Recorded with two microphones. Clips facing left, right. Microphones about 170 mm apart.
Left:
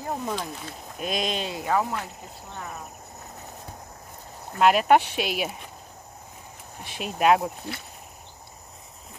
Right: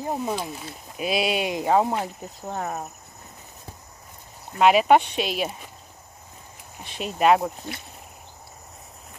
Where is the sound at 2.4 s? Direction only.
45° right (ahead or behind).